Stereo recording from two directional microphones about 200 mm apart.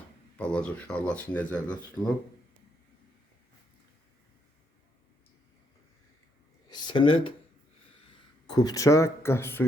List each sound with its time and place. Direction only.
0.3 s speech: 5° left (ahead or behind)
6.7 s a sound: 25° left (ahead or behind)
8.1 s speech: 20° left (ahead or behind)